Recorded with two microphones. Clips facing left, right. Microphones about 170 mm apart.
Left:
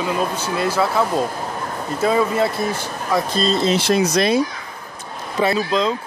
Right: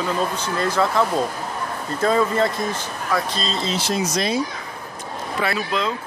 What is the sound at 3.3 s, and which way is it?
Speech, 50° left (ahead or behind).